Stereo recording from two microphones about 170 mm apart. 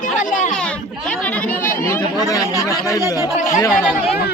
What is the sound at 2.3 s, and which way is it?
Speech, 20° left (ahead or behind).